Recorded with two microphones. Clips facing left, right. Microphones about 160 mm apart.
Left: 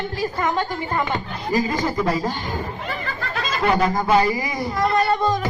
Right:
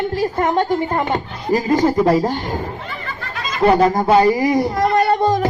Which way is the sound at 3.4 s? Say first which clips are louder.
Right 2 dB; 40° left (ahead or behind).